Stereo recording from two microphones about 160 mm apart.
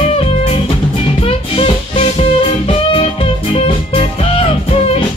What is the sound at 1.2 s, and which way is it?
Music, 35° left (ahead or behind).